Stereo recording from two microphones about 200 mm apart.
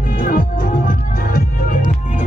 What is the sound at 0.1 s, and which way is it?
Music, 45° left (ahead or behind).